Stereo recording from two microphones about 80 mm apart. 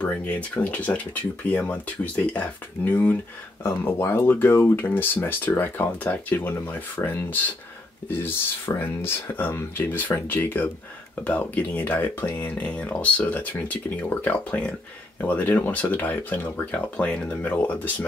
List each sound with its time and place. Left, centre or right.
0.0 s speech: centre